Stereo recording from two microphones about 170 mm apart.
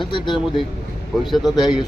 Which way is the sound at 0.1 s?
30° left (ahead or behind).